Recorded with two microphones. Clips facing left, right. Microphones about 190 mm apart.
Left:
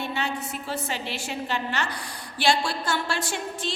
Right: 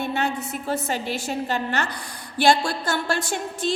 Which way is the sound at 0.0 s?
50° right (ahead or behind).